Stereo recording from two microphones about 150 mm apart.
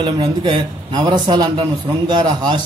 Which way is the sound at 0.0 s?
30° right (ahead or behind).